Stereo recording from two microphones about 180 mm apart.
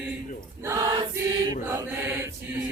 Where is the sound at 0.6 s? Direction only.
15° right (ahead or behind).